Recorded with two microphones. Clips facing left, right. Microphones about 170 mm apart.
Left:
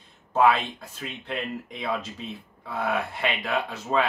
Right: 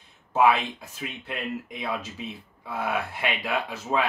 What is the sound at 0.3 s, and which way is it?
Speech, 10° right (ahead or behind).